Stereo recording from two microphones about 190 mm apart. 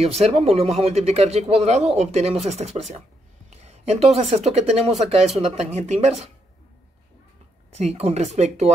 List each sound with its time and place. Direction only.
0.0 s speech: 30° right (ahead or behind)
7.7 s speech: 35° right (ahead or behind)